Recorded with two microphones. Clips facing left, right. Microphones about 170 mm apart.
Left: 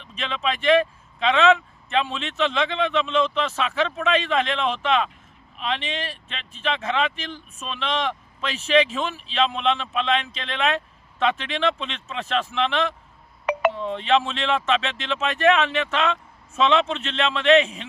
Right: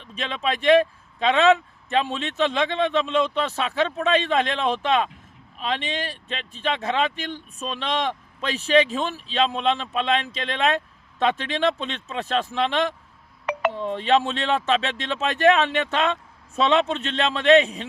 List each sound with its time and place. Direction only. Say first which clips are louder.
0.1 s speech: right 1 dB; 40° right (ahead or behind)
11.2 s speech: right 1 dB; 40° right (ahead or behind)
13.4 s a sound: left 2 dB; 5° left (ahead or behind)
13.8 s speech: right 1 dB; 40° right (ahead or behind)